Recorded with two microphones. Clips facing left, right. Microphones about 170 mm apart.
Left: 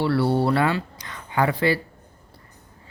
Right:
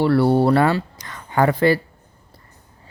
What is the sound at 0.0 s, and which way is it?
Speech, 45° right (ahead or behind).